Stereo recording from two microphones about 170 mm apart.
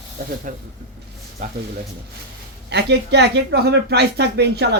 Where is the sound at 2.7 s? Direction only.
80° right.